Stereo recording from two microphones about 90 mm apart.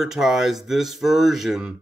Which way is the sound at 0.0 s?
5° right (ahead or behind).